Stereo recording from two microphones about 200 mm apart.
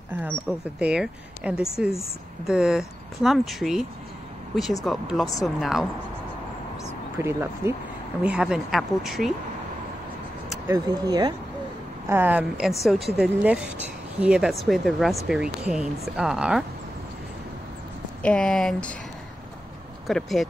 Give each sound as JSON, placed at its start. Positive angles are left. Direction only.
{"t": 0.7, "sound": "speech", "side_deg": -5}
{"t": 4.8, "sound": "speech", "side_deg": 0}
{"t": 7.2, "sound": "speech", "side_deg": -15}
{"t": 10.7, "sound": "speech", "side_deg": -20}
{"t": 12.1, "sound": "speech", "side_deg": -10}
{"t": 18.2, "sound": "speech", "side_deg": 5}
{"t": 20.1, "sound": "speech", "side_deg": 0}